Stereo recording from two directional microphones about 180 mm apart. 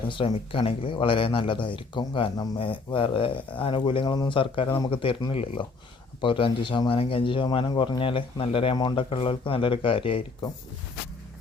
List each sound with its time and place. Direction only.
0.1 s speech: 30° left (ahead or behind)